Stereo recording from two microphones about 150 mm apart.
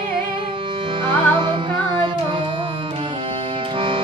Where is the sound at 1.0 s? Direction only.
35° right (ahead or behind).